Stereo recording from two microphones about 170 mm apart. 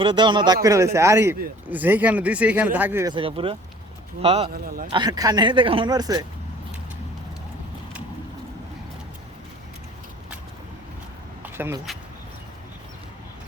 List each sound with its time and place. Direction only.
0.0 s speech: 30° right (ahead or behind); by 3.1 s 10° right (ahead or behind)
3.1 s speech: 30° right (ahead or behind)
4.4 s a man's voice: 60° right (ahead or behind)
4.9 s speech: 25° right (ahead or behind)
11.4 s vehicle: 15° right (ahead or behind)